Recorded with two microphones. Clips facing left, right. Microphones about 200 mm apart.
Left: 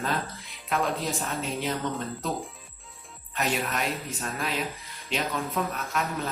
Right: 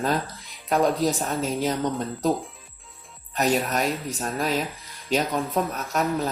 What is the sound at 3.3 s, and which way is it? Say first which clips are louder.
A man's voice: right 6 dB; 40° right (ahead or behind).